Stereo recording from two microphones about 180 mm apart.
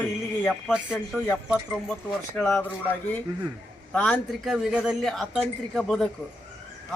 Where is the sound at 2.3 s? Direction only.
5° left (ahead or behind).